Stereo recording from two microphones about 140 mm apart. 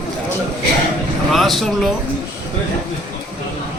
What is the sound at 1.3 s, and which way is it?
Speech, centre (ahead or behind).